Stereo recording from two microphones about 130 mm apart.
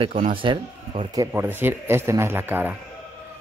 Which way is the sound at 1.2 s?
20° right (ahead or behind).